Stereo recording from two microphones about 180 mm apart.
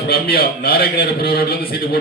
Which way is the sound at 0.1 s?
60° left (ahead or behind).